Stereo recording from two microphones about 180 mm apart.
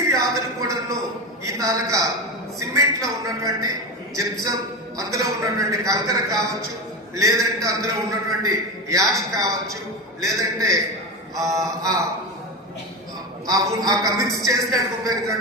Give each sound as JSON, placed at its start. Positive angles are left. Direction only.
{"t": 0.1, "sound": "a sound", "side_deg": -20}
{"t": 1.5, "sound": "a man's voice", "side_deg": -20}
{"t": 13.5, "sound": "a man's voice", "side_deg": -20}